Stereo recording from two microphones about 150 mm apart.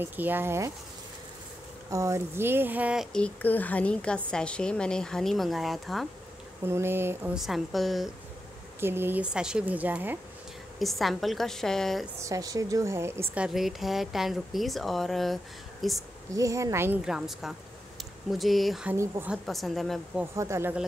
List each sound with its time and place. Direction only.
0.0 s speech: 10° right (ahead or behind)
1.9 s speech: 20° right (ahead or behind)
3.1 s a woman's voice: 5° left (ahead or behind)
6.6 s speech: 15° right (ahead or behind)
7.3 s speech: centre (ahead or behind)
8.7 s speech: 15° right (ahead or behind)
10.8 s speech: centre (ahead or behind)
12.2 s speech: 20° right (ahead or behind)
13.3 s speech: 5° right (ahead or behind)
16.3 s speech: 20° right (ahead or behind)
17.0 s speech: 5° right (ahead or behind)
18.9 s speech: 15° right (ahead or behind)
19.3 s speech: centre (ahead or behind)
20.3 s speech: 20° right (ahead or behind)